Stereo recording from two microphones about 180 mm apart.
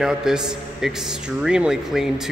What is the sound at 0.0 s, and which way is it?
Speech, 5° right (ahead or behind).